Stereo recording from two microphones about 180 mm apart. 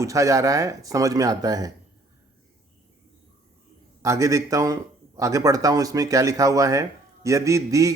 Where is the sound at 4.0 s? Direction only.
15° right (ahead or behind).